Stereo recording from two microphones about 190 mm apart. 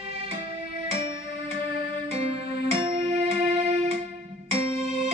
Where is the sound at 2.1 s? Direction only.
30° right (ahead or behind).